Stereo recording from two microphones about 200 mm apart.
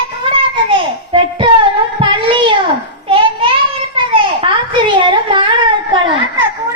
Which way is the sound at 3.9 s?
25° right (ahead or behind).